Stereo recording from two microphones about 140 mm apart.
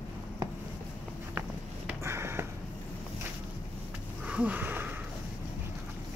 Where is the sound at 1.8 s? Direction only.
20° right (ahead or behind).